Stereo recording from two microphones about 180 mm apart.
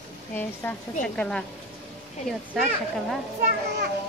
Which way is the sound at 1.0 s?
5° left (ahead or behind).